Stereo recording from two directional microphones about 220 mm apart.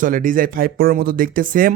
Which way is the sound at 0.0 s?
35° right (ahead or behind).